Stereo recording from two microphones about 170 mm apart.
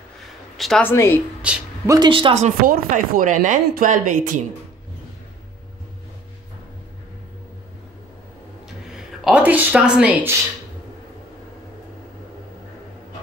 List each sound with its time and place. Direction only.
0.6 s a woman's voice: centre (ahead or behind)
0.8 s a woman's voice: 15° left (ahead or behind)
1.5 s speech: 5° right (ahead or behind)
1.9 s speech: 25° right (ahead or behind)
2.4 s speech: 55° right (ahead or behind)
8.6 s a sound: centre (ahead or behind)